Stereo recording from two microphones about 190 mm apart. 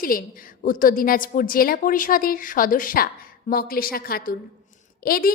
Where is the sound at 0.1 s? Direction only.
50° left (ahead or behind).